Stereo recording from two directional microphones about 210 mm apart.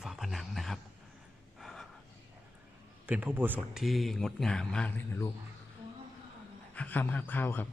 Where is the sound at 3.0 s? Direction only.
10° right (ahead or behind); by 5.2 s 10° left (ahead or behind).